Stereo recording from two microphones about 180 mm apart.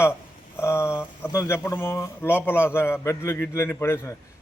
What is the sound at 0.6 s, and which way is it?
A man's voice, 15° left (ahead or behind).